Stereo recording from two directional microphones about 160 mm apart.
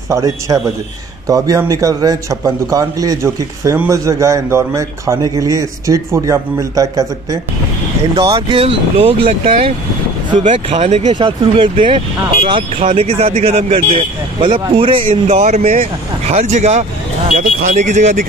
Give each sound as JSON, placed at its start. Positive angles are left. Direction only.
{"t": 0.1, "sound": "a man's voice", "side_deg": -20}
{"t": 8.2, "sound": "speech", "side_deg": -30}
{"t": 11.1, "sound": "speech", "side_deg": -30}
{"t": 17.4, "sound": "speech", "side_deg": -55}